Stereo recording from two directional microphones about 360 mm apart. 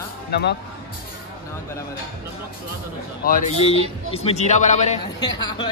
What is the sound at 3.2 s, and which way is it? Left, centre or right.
A man's voice, left.